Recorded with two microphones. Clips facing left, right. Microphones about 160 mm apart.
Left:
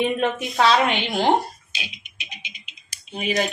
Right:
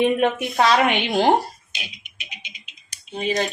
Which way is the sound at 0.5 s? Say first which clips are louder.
Left 1 dB; 15° right (ahead or behind).